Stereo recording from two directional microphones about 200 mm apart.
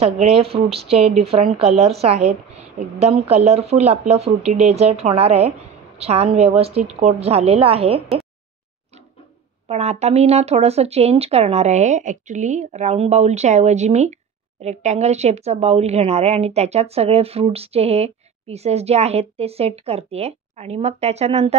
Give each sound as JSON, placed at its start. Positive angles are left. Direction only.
{"t": 0.0, "sound": "a woman's voice", "side_deg": -30}
{"t": 9.7, "sound": "a woman's voice", "side_deg": -35}